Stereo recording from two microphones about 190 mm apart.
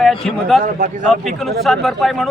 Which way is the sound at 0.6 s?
40° right (ahead or behind).